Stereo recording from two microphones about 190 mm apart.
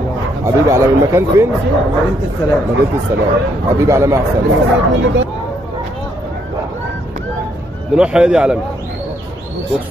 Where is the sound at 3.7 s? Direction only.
15° right (ahead or behind).